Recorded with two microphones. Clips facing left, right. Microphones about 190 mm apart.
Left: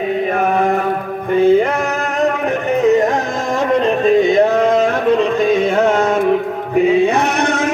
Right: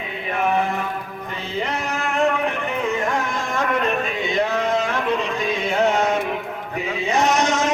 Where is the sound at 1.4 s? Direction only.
50° left (ahead or behind).